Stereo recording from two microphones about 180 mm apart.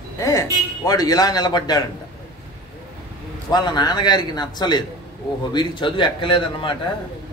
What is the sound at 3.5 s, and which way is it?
A man's voice, 25° left (ahead or behind).